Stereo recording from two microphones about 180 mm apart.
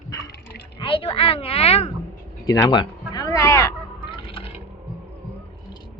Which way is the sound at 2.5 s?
20° left (ahead or behind).